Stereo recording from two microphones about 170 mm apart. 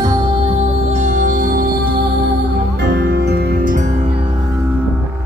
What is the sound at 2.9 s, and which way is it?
Music, 70° right (ahead or behind).